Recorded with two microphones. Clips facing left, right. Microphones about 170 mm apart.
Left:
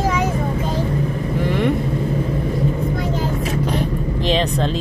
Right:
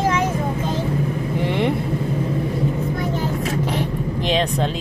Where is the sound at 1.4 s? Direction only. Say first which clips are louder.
Left 2 dB; 25° right (ahead or behind).